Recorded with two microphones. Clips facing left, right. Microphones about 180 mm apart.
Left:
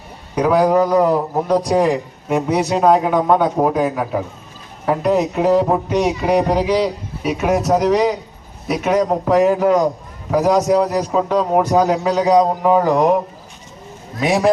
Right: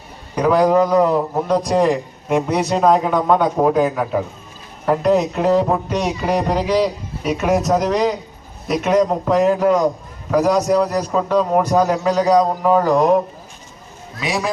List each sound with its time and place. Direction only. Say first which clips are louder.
0.3 s a man's voice: even; 5° left (ahead or behind)
14.2 s a man's voice: left 7 dB; 50° left (ahead or behind)